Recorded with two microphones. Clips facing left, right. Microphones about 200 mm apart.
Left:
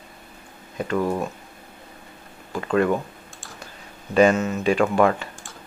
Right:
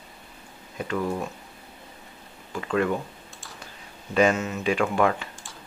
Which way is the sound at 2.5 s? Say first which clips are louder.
Left 4 dB; 40° left (ahead or behind).